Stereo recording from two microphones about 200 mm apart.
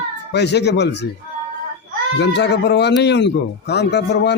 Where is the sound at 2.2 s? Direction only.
60° left (ahead or behind).